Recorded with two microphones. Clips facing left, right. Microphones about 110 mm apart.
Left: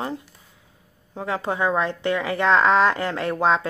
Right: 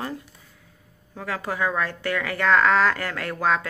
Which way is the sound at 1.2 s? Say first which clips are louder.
Left 3 dB; 25° left (ahead or behind).